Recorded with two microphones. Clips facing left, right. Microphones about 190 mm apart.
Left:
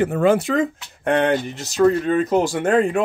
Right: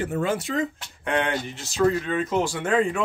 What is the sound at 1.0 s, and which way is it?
Speech, 45° left (ahead or behind).